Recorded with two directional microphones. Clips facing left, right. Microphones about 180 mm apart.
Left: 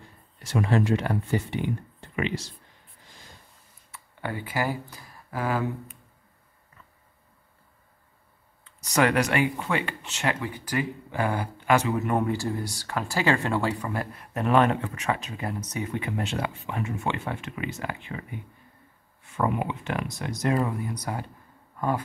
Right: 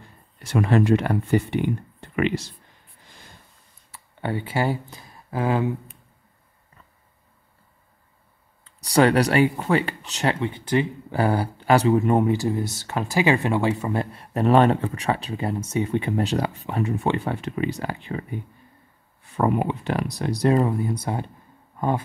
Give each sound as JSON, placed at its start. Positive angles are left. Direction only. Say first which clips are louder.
{"t": 0.4, "sound": "speech", "louder": "right 4 dB", "side_deg": -60}
{"t": 3.9, "sound": "speech", "louder": "right 5 dB", "side_deg": -25}
{"t": 8.6, "sound": "speech", "louder": "right 5 dB", "side_deg": -35}